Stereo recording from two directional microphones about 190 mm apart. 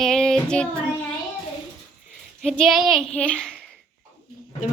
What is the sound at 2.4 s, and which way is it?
A woman's voice, 5° left (ahead or behind).